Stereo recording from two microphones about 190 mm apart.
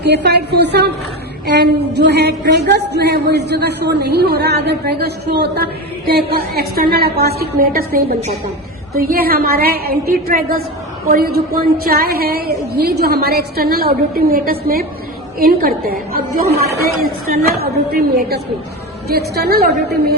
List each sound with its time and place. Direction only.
0.0 s a woman's voice: 60° right (ahead or behind)